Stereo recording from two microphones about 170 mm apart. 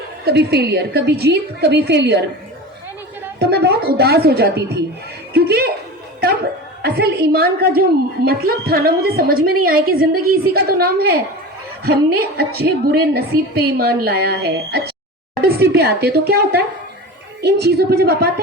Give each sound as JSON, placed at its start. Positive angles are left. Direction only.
{"t": 0.3, "sound": "a woman's voice", "side_deg": -70}
{"t": 3.3, "sound": "a woman's voice", "side_deg": -70}
{"t": 6.8, "sound": "a woman's voice", "side_deg": -65}